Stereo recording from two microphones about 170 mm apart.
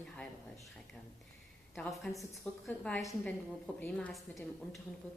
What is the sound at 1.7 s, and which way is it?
Speech, centre (ahead or behind).